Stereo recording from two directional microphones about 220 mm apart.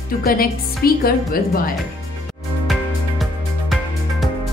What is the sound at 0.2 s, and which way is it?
A woman's voice, 40° left (ahead or behind).